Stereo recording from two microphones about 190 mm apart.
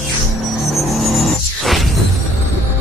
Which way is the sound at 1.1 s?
Centre (ahead or behind).